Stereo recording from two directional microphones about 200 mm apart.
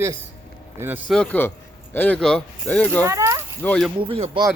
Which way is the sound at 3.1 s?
15° right (ahead or behind).